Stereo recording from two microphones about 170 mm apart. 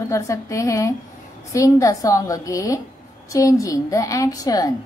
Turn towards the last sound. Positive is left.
turn(degrees=20)  # may be behind; listen again after turning